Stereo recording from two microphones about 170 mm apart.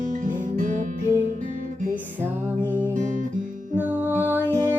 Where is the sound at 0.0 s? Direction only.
50° right (ahead or behind).